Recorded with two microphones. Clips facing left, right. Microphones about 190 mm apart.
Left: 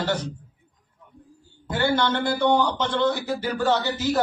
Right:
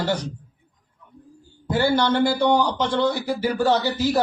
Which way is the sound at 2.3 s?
15° right (ahead or behind).